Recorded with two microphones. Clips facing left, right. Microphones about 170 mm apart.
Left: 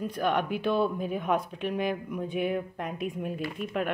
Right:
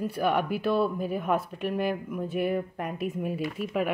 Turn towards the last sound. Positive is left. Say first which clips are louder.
# right 2 dB
turn(degrees=-5)  # may be behind; listen again after turning